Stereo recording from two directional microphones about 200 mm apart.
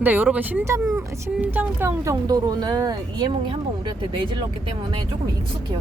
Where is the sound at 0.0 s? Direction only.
10° right (ahead or behind).